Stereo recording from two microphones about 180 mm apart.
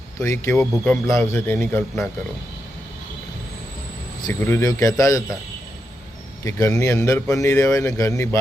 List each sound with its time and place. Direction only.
0.2 s a man's voice: 15° left (ahead or behind)
0.5 s a man's voice: 5° left (ahead or behind)
4.3 s a man's voice: 10° left (ahead or behind)
6.4 s a man's voice: 15° left (ahead or behind)